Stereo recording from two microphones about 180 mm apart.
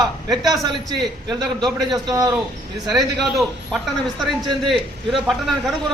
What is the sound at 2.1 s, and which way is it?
Speech, 20° right (ahead or behind).